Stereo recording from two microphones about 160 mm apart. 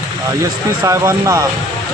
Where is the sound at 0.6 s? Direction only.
20° right (ahead or behind).